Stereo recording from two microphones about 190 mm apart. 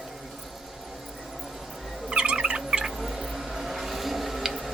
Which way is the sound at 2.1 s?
5° right (ahead or behind).